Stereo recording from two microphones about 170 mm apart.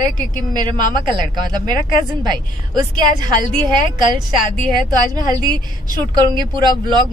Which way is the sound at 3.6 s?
25° right (ahead or behind).